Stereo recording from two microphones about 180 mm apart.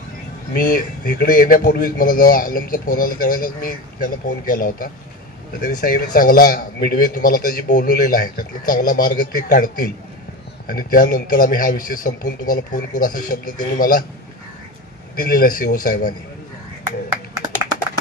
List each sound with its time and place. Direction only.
0.6 s a man's voice: 50° left (ahead or behind)
15.2 s a man's voice: 55° left (ahead or behind)